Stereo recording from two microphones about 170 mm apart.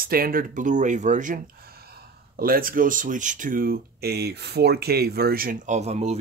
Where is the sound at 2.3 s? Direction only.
60° right (ahead or behind); by 6.2 s 40° right (ahead or behind).